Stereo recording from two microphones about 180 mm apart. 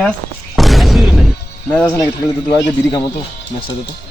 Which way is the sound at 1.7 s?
10° left (ahead or behind).